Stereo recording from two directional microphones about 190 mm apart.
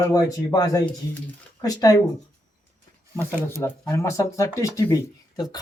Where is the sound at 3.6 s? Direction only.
15° left (ahead or behind).